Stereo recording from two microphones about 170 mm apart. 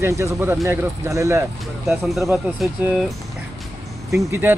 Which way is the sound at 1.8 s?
Centre (ahead or behind).